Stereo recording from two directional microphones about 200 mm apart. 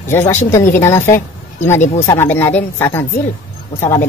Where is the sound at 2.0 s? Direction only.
15° left (ahead or behind).